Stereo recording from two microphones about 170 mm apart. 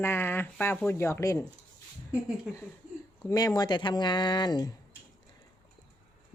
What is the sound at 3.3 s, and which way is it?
Speech, 20° left (ahead or behind).